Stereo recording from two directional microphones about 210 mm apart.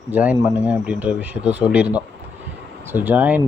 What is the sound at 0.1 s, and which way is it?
Speech, 5° right (ahead or behind).